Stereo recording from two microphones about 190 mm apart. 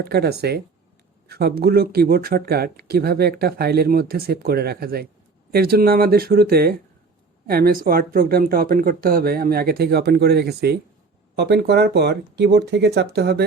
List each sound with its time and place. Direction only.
0.0 s speech: 55° right (ahead or behind)